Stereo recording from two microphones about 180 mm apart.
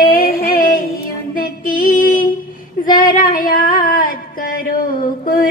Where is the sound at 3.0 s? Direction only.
50° left (ahead or behind).